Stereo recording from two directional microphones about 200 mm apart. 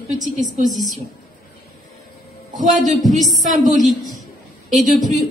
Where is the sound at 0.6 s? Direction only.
20° left (ahead or behind).